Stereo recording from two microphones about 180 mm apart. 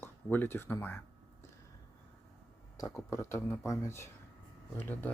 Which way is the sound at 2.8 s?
15° left (ahead or behind).